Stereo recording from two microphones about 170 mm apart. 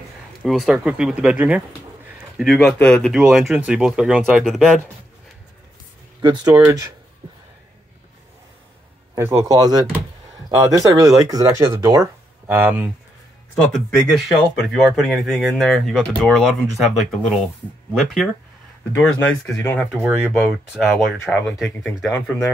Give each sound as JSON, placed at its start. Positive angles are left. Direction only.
{"t": 0.4, "sound": "speech", "side_deg": 0}
{"t": 6.2, "sound": "speech", "side_deg": -25}
{"t": 9.1, "sound": "speech", "side_deg": -15}
{"t": 13.8, "sound": "speech", "side_deg": 0}